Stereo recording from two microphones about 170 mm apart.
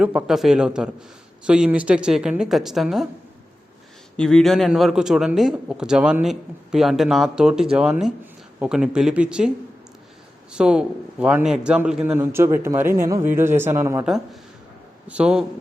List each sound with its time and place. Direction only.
0.0 s a man's voice: 5° right (ahead or behind)
4.2 s a man's voice: 5° left (ahead or behind)
10.5 s a man's voice: 5° right (ahead or behind)
15.0 s a man's voice: 5° right (ahead or behind)